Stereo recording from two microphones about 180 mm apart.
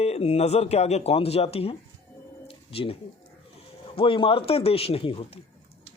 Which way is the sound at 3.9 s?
30° left (ahead or behind).